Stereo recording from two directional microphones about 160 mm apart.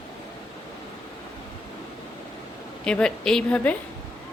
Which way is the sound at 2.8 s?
5° left (ahead or behind).